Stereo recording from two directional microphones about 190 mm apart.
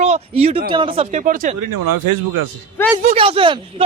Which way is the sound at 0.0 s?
35° right (ahead or behind).